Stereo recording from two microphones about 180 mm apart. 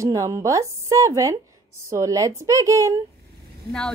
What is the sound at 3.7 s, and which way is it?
Speech, 5° left (ahead or behind).